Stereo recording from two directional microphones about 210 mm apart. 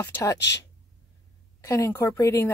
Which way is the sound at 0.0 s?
15° left (ahead or behind).